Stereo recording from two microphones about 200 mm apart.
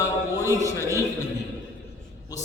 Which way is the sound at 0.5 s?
15° right (ahead or behind).